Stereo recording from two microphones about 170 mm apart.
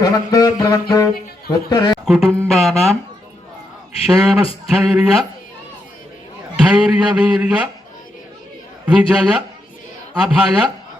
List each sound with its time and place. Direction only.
0.0 s speech: 25° left (ahead or behind)
2.0 s a man's voice: centre (ahead or behind)
4.0 s a man's voice: 5° right (ahead or behind)
6.6 s a man's voice: 5° right (ahead or behind)
8.9 s a man's voice: 5° right (ahead or behind)